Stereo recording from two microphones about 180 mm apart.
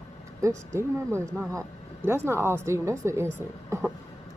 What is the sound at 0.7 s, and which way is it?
Speech, 15° right (ahead or behind).